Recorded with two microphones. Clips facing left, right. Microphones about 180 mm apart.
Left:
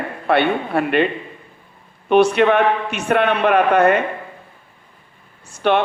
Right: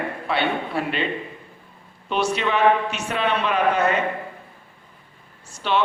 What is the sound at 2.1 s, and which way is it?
Speech, 60° left (ahead or behind).